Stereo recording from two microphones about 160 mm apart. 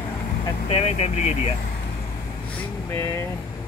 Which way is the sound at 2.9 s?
20° left (ahead or behind).